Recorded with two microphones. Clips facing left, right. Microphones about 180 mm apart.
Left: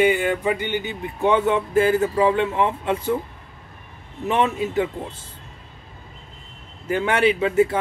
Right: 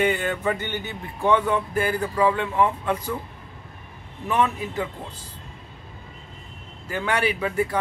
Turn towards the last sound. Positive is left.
turn(degrees=25)  # may be behind; listen again after turning